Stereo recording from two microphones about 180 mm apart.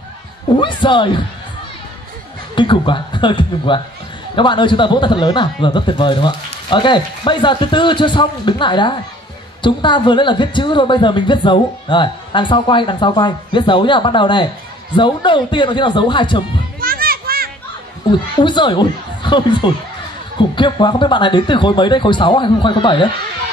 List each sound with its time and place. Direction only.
0.6 s a woman's voice: 25° left (ahead or behind)
2.5 s a woman's voice: 25° left (ahead or behind)
16.8 s children playing: 55° right (ahead or behind)
18.4 s a woman's voice: 25° left (ahead or behind)